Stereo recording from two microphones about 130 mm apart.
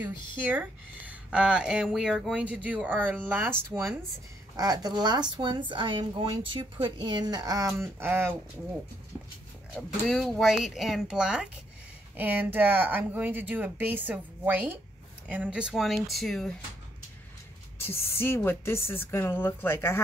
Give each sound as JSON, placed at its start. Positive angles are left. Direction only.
{"t": 0.0, "sound": "speech", "side_deg": -15}
{"t": 4.6, "sound": "speech", "side_deg": -30}
{"t": 10.0, "sound": "speech", "side_deg": 0}
{"t": 17.7, "sound": "a woman's voice", "side_deg": 20}